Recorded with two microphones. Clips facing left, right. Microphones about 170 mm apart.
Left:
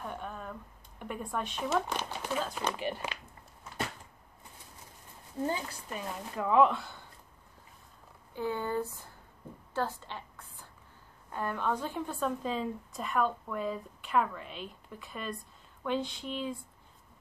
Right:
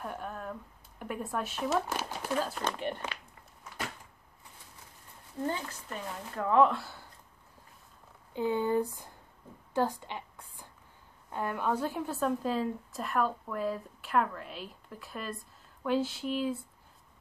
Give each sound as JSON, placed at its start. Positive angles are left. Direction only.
{"t": 0.0, "sound": "speech", "side_deg": -5}
{"t": 2.5, "sound": "a woman's voice", "side_deg": 5}
{"t": 5.4, "sound": "speech", "side_deg": 15}
{"t": 8.3, "sound": "speech", "side_deg": -20}
{"t": 9.8, "sound": "a sound", "side_deg": -15}
{"t": 11.3, "sound": "a woman's voice", "side_deg": -10}